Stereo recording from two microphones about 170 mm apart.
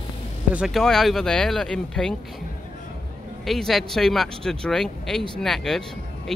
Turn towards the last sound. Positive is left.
turn(degrees=5)  # may be behind; listen again after turning